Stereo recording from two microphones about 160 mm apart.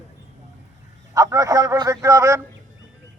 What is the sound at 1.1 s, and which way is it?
A man's voice, 20° right (ahead or behind).